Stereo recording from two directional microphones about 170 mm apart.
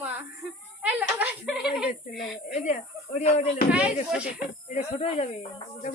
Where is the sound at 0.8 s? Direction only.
10° right (ahead or behind).